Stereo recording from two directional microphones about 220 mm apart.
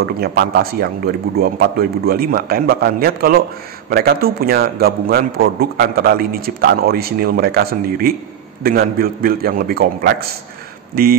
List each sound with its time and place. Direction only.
0.0 s a man's voice: 45° right (ahead or behind)